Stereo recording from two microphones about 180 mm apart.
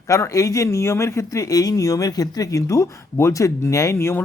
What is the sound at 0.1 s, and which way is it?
Speech, 15° left (ahead or behind).